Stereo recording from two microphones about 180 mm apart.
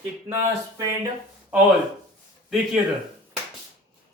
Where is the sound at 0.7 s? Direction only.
15° right (ahead or behind).